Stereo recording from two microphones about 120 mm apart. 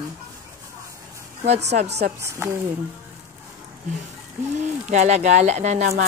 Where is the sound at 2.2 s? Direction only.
20° right (ahead or behind).